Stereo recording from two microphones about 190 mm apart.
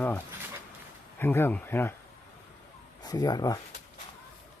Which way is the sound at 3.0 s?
20° left (ahead or behind).